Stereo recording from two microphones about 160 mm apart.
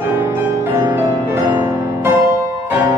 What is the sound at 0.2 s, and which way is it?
Music, 15° right (ahead or behind).